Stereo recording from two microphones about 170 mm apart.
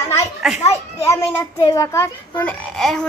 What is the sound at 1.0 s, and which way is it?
A woman's voice, 15° left (ahead or behind).